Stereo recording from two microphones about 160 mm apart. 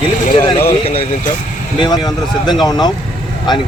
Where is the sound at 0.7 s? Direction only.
35° left (ahead or behind).